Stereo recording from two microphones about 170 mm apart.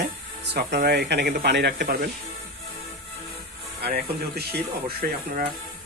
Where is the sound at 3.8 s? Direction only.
70° right (ahead or behind).